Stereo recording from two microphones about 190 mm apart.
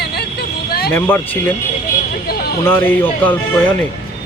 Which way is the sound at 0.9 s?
10° left (ahead or behind).